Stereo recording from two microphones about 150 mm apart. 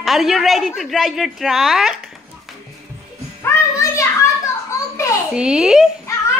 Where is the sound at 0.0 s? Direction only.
Centre (ahead or behind).